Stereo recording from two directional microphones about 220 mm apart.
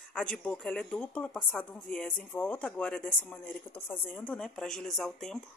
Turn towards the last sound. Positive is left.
turn(degrees=0)  # may be behind; listen again after turning